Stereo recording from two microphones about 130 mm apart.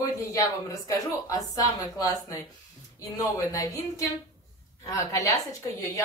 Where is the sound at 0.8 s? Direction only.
25° left (ahead or behind).